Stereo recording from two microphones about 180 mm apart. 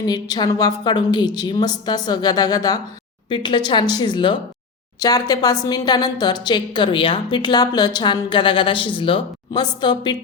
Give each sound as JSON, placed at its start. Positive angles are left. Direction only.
{"t": 0.0, "sound": "a woman's voice", "side_deg": 20}